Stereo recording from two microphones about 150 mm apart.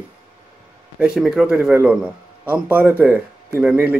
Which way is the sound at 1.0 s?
5° right (ahead or behind).